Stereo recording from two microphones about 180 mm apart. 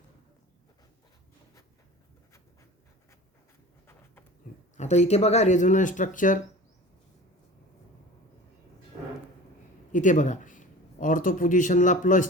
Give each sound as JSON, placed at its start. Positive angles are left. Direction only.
{"t": 4.8, "sound": "speech", "side_deg": 40}
{"t": 9.9, "sound": "a man's voice", "side_deg": 45}